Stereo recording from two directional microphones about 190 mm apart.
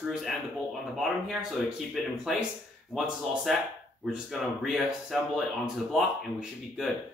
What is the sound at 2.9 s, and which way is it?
Speech, centre (ahead or behind).